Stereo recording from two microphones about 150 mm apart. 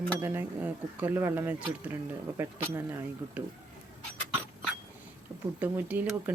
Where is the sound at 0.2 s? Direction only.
15° right (ahead or behind).